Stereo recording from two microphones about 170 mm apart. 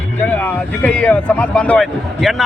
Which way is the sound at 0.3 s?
10° left (ahead or behind).